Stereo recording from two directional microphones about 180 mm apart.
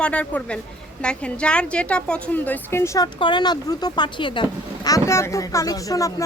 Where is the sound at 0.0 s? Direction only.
10° left (ahead or behind).